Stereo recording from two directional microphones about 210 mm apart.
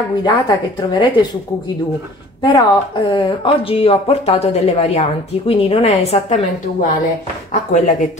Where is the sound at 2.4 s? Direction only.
20° left (ahead or behind).